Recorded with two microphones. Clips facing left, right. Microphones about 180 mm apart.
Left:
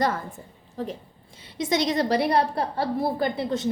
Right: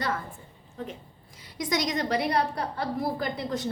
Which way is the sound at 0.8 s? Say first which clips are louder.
Left 6 dB; 30° left (ahead or behind).